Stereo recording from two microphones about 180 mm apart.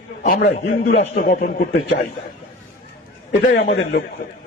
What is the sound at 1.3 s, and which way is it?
Speech, 50° left (ahead or behind).